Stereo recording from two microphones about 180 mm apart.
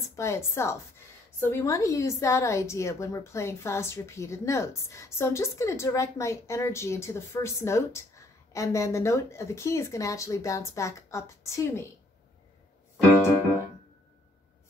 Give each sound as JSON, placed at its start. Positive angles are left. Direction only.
{"t": 0.1, "sound": "a woman's voice", "side_deg": 15}